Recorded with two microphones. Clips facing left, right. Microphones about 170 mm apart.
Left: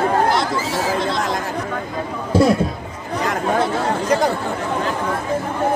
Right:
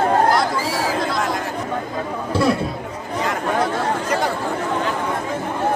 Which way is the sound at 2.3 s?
45° left (ahead or behind).